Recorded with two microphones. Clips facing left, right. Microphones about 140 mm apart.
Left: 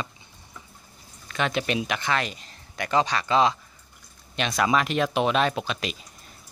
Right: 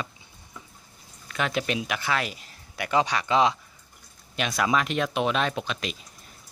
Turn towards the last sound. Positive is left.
turn(degrees=5)  # may be behind; listen again after turning